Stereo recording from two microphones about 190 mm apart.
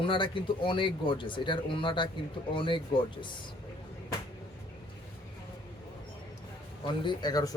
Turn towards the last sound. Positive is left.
turn(degrees=20)  # may be behind; listen again after turning